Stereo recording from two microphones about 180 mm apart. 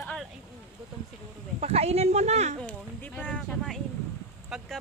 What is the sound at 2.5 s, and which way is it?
Speech, 10° left (ahead or behind).